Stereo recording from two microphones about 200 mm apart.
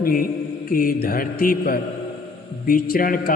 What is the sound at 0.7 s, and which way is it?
A man's voice, 45° left (ahead or behind).